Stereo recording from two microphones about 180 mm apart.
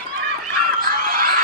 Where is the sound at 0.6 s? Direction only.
50° right (ahead or behind).